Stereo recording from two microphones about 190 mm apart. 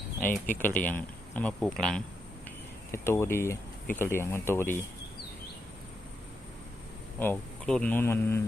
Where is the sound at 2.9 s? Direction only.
15° left (ahead or behind).